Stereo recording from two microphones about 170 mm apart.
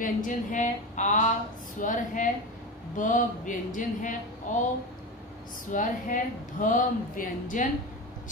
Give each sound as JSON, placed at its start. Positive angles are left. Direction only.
{"t": 0.0, "sound": "a woman's voice", "side_deg": 50}
{"t": 5.7, "sound": "a woman's voice", "side_deg": 50}